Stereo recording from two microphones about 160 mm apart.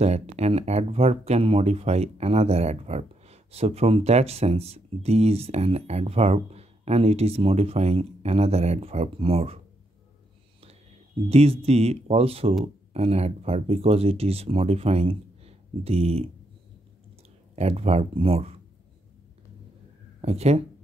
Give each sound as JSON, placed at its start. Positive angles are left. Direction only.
{"t": 0.0, "sound": "speech", "side_deg": -40}
{"t": 11.2, "sound": "speech", "side_deg": -40}
{"t": 17.6, "sound": "speech", "side_deg": -40}
{"t": 20.2, "sound": "speech", "side_deg": -40}